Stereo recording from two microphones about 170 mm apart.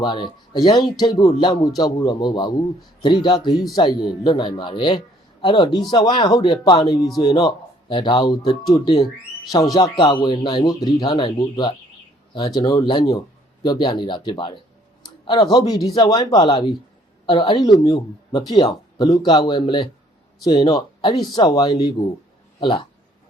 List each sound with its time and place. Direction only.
0.0 s a man's voice: 25° left (ahead or behind)